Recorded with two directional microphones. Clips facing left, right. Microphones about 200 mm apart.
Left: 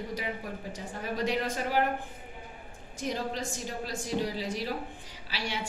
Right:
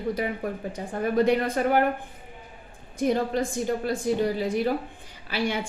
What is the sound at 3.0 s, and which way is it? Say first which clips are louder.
A woman's voice: right 9 dB; 55° right (ahead or behind).